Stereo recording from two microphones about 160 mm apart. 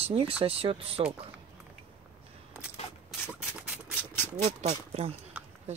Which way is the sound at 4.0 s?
15° left (ahead or behind).